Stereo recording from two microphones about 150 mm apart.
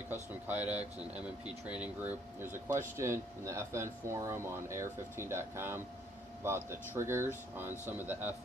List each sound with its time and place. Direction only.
0.1 s speech: 10° right (ahead or behind)